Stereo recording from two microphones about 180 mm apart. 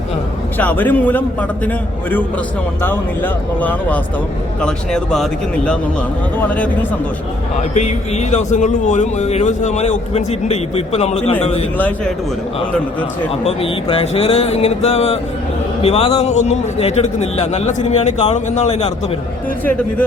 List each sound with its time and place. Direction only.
0.6 s a man's voice: 10° left (ahead or behind)
3.6 s a man's voice: 10° left (ahead or behind)
7.7 s a man's voice: 40° left (ahead or behind)
11.8 s a man's voice: 10° left (ahead or behind)
13.4 s a man's voice: 35° left (ahead or behind)